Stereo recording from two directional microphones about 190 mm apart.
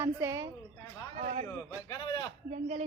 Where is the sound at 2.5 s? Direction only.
40° right (ahead or behind).